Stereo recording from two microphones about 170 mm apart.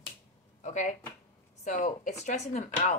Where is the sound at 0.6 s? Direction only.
45° left (ahead or behind).